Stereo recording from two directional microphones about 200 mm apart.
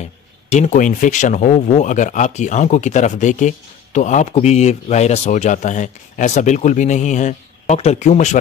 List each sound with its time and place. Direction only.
0.5 s speech: 35° left (ahead or behind)